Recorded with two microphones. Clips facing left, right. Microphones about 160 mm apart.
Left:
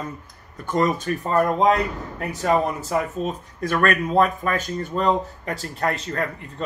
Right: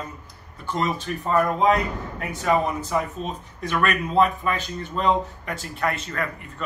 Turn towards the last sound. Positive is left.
turn(degrees=35)  # may be behind; listen again after turning